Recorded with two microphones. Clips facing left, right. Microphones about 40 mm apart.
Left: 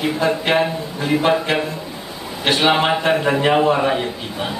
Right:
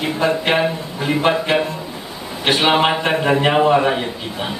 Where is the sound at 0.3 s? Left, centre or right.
Centre.